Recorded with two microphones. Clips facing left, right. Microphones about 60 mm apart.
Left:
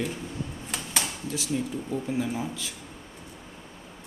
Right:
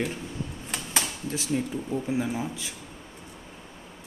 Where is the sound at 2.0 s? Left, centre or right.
Centre.